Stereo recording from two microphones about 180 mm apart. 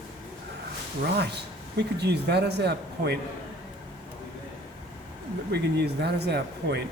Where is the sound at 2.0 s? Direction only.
70° right (ahead or behind).